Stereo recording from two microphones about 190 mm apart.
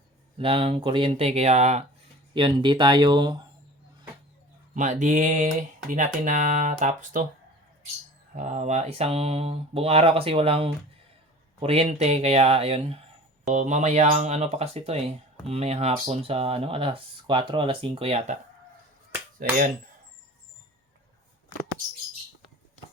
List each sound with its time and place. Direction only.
0.3 s speech: 30° right (ahead or behind)
4.7 s speech: 40° right (ahead or behind)
8.4 s speech: 40° right (ahead or behind)
19.4 s speech: 50° right (ahead or behind)